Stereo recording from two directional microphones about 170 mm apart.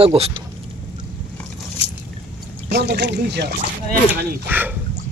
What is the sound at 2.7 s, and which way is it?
Speech, 90° right.